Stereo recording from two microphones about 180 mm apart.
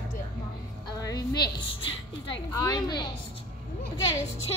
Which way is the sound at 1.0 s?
20° left (ahead or behind).